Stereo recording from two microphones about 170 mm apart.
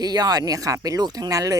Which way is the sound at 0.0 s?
25° right (ahead or behind).